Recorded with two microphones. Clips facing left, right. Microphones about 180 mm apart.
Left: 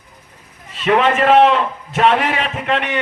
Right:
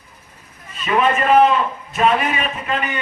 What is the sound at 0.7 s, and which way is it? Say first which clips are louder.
A man's voice: left 3 dB; 85° left.